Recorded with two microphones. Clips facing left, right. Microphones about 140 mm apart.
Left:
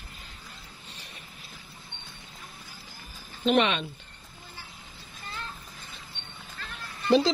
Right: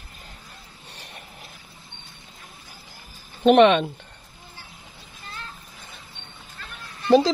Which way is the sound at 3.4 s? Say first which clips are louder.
Right 9 dB; 55° right (ahead or behind).